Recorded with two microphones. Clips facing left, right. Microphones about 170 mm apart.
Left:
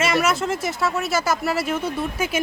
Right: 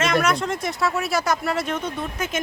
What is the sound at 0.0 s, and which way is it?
A woman's voice, 5° left (ahead or behind).